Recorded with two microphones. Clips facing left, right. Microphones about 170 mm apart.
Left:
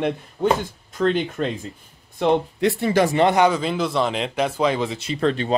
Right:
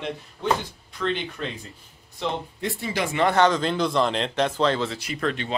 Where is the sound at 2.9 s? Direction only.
40° left (ahead or behind).